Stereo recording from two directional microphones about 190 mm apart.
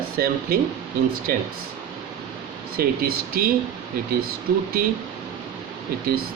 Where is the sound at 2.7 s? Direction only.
50° right (ahead or behind).